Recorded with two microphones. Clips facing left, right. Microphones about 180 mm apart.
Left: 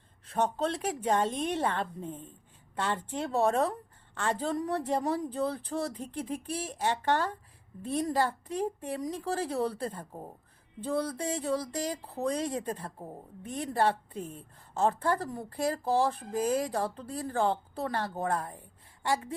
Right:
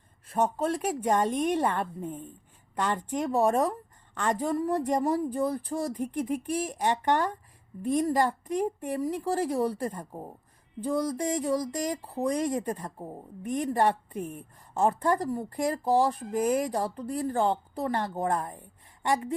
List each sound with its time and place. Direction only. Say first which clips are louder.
0.3 s speech: right 3 dB; 10° right (ahead or behind)